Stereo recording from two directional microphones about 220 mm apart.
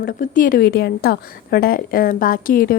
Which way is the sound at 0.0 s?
40° left (ahead or behind).